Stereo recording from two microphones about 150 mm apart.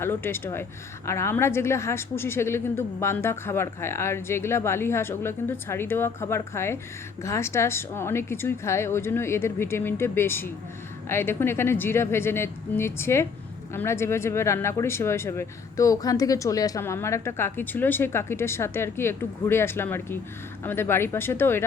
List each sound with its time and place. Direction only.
0.0 s speech: 15° left (ahead or behind)